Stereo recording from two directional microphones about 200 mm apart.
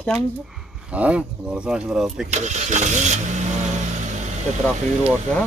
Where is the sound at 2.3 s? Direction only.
35° right (ahead or behind).